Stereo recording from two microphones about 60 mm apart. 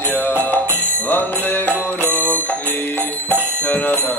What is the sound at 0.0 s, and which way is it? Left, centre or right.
Music, left.